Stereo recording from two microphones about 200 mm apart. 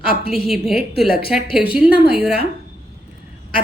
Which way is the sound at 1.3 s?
Centre (ahead or behind).